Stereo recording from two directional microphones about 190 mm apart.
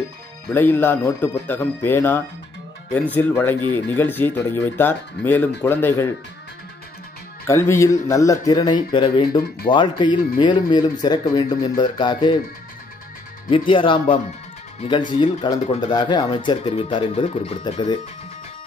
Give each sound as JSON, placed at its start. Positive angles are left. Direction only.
{"t": 0.5, "sound": "speech", "side_deg": 10}
{"t": 7.4, "sound": "speech", "side_deg": 15}
{"t": 13.5, "sound": "speech", "side_deg": 25}